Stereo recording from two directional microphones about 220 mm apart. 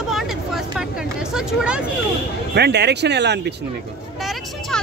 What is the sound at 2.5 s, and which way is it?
Speech, 50° right (ahead or behind).